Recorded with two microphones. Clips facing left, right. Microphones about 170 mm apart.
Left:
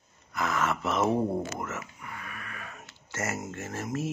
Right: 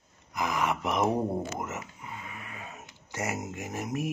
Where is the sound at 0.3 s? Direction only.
15° right (ahead or behind).